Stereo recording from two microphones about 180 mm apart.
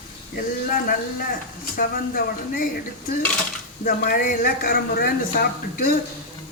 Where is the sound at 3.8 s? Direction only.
55° left (ahead or behind).